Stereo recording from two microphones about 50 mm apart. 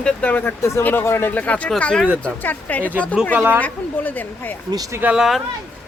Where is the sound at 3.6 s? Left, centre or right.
Left.